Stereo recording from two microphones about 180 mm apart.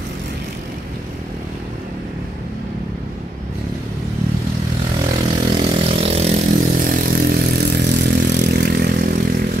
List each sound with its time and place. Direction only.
4.9 s vehicle: 25° right (ahead or behind)
6.7 s vehicle: 50° right (ahead or behind)